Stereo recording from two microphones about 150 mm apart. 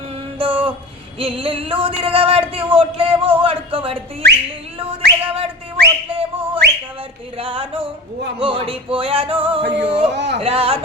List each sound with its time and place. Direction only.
0.3 s female singing: 35° right (ahead or behind)
1.2 s a sound: 35° right (ahead or behind)
4.2 s whistle: 90° right
4.8 s whistling: 40° right (ahead or behind)
6.6 s whistling: 90° right
7.3 s a sound: 35° right (ahead or behind)